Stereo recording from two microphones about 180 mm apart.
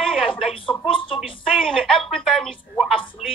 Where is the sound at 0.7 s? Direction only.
30° left (ahead or behind).